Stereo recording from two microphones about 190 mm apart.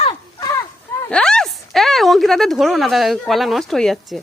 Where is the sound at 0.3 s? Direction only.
15° left (ahead or behind).